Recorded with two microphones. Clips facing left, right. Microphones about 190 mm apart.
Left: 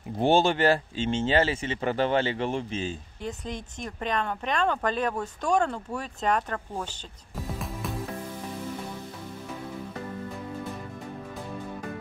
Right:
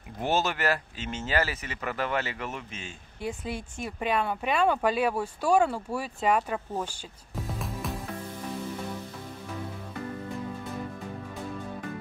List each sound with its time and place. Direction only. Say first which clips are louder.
0.2 s speech: left 6 dB; 30° left (ahead or behind)
3.2 s speech: right 5 dB; 10° right (ahead or behind)